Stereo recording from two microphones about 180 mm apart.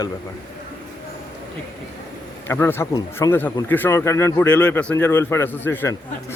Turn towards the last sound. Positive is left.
turn(degrees=10)  # may be behind; listen again after turning